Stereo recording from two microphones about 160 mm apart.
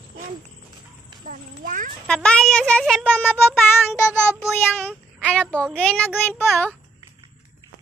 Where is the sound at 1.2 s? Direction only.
55° right (ahead or behind).